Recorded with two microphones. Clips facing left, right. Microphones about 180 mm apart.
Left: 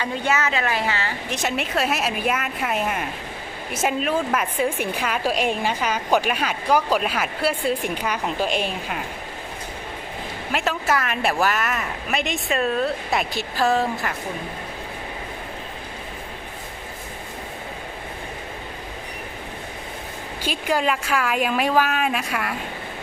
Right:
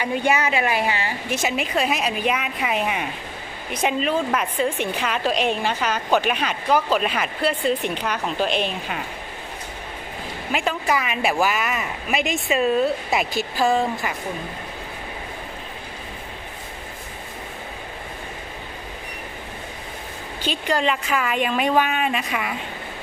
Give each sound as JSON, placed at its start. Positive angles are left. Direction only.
{"t": 0.0, "sound": "a woman's voice", "side_deg": -15}
{"t": 1.4, "sound": "a woman's voice", "side_deg": 0}
{"t": 10.5, "sound": "a woman's voice", "side_deg": 0}
{"t": 20.4, "sound": "a woman's voice", "side_deg": 10}